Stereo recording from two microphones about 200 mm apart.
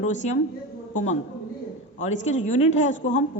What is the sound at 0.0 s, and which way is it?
A woman's voice, 35° left (ahead or behind).